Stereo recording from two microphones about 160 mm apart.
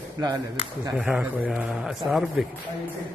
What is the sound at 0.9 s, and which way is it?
A man's voice, 5° right (ahead or behind).